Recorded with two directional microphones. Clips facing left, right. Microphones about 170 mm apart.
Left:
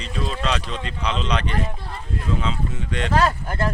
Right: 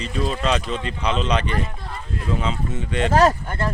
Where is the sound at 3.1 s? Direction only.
40° right (ahead or behind).